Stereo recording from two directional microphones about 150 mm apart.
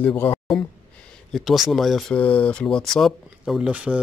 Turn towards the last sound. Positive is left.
turn(degrees=-10)  # may be behind; listen again after turning